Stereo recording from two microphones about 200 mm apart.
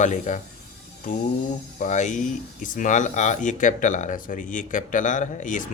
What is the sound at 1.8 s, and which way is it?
Speech, 40° left (ahead or behind).